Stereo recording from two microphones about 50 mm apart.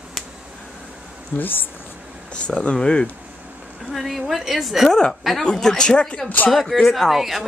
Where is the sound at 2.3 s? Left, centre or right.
Left.